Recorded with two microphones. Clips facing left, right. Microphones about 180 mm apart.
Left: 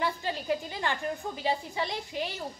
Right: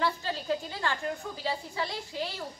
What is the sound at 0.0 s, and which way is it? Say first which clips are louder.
A woman's voice: even; 15° left (ahead or behind).